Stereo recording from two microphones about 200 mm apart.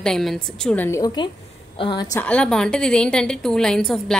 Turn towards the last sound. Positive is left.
turn(degrees=0)  # may be behind; listen again after turning